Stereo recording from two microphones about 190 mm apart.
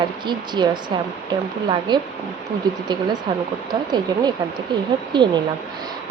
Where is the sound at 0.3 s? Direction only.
25° right (ahead or behind).